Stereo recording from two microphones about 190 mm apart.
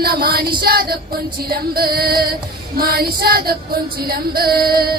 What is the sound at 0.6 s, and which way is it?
Female singing, 55° right (ahead or behind).